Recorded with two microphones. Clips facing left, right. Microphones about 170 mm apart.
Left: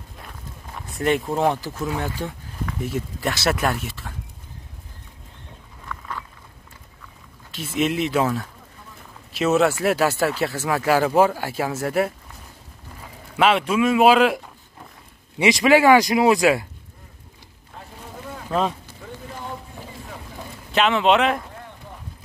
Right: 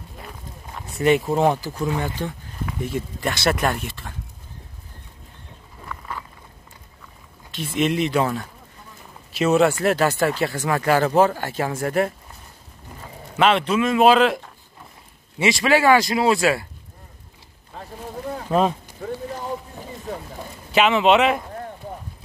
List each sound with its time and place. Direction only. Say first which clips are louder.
0.2 s speech: right 1 dB; centre (ahead or behind)
5.9 s walk: even; 5° right (ahead or behind)
7.5 s speech: right 1 dB; centre (ahead or behind)
13.4 s speech: even; 10° left (ahead or behind)
18.5 s speech: right 3 dB; 15° right (ahead or behind)
20.7 s speech: right 2 dB; 5° right (ahead or behind)